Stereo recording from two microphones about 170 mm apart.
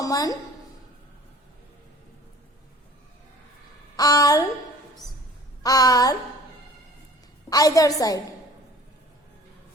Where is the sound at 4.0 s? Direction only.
20° left (ahead or behind).